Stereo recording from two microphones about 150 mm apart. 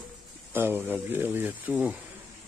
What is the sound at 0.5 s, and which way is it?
Speech, 15° right (ahead or behind).